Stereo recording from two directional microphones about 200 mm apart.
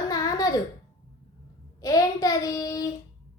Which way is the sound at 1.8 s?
15° left (ahead or behind).